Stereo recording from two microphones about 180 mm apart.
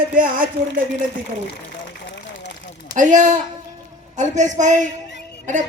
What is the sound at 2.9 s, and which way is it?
Speech, 45° right (ahead or behind).